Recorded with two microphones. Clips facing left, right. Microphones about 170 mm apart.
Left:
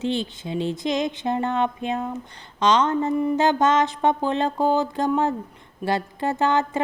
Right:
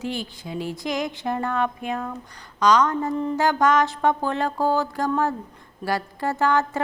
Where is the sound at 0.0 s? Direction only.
25° left (ahead or behind).